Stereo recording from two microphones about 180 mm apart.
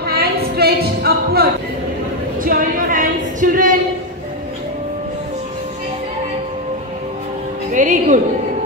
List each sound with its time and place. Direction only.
0.0 s a sound: 60° right (ahead or behind)
2.4 s singing: 50° right (ahead or behind)
7.7 s music: 45° right (ahead or behind)